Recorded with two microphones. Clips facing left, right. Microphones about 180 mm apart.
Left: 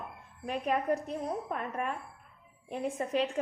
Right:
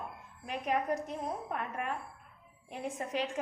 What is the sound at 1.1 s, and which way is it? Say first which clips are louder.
A woman's voice: left 3 dB; 40° left (ahead or behind).